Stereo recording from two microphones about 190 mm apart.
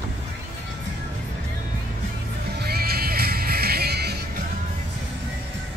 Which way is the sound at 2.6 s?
55° right (ahead or behind).